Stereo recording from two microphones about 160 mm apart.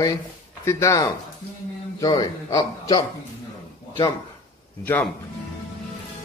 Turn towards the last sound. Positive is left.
turn(degrees=10)  # may be behind; listen again after turning